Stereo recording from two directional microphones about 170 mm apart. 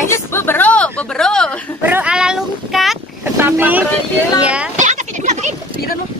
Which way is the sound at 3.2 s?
10° right (ahead or behind).